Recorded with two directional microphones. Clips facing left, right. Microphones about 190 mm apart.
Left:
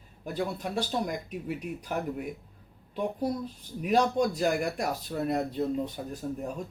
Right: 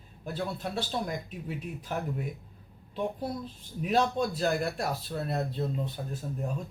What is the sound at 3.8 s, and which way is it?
A man's voice, 15° left (ahead or behind).